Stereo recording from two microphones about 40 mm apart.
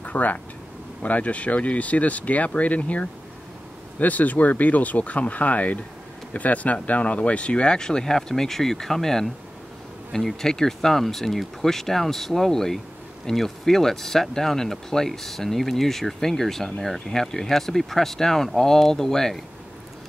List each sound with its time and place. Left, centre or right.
0.0 s speech: left; by 19.4 s centre